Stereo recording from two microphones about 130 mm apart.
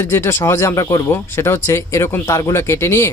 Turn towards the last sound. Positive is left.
turn(degrees=20)  # may be behind; listen again after turning